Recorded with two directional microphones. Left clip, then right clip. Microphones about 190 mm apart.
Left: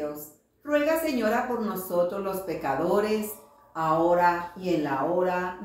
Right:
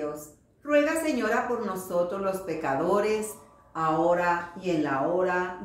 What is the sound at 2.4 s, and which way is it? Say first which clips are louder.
Speech: even; 50° right (ahead or behind).